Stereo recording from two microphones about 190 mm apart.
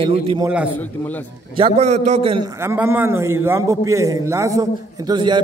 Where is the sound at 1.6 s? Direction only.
35° right (ahead or behind).